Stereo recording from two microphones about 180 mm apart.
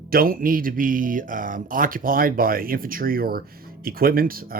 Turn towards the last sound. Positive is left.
turn(degrees=-55)  # may be behind; listen again after turning